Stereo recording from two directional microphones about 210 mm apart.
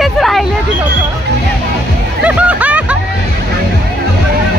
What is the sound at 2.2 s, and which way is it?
Music, 5° right (ahead or behind).